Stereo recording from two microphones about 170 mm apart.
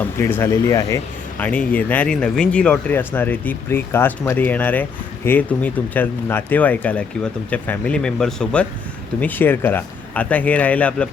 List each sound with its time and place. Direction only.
0.0 s speech: 10° left (ahead or behind)